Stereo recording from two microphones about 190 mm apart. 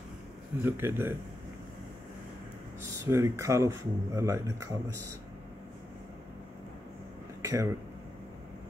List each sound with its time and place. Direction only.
0.7 s speech: 10° right (ahead or behind)
3.1 s speech: 15° right (ahead or behind)
7.4 s speech: 15° right (ahead or behind)